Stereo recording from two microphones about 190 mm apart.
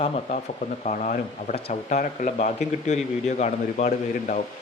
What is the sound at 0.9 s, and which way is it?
Speech, 45° left (ahead or behind).